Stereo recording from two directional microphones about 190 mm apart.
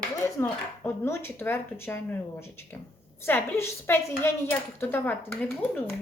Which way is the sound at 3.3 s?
10° left (ahead or behind).